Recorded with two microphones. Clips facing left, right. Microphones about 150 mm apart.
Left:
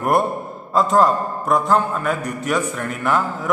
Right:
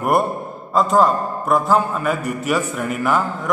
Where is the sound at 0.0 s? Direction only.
Centre (ahead or behind).